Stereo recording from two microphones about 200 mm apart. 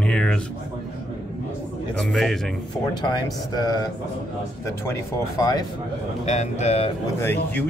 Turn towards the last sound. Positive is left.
turn(degrees=10)  # may be behind; listen again after turning